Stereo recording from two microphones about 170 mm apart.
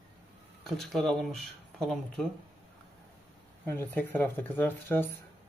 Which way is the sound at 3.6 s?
10° left (ahead or behind).